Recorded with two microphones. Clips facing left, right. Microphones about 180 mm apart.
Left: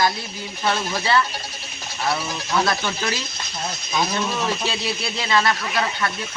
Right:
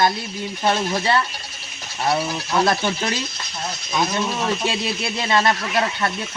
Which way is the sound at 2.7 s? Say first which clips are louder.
Right 3 dB; 25° right (ahead or behind).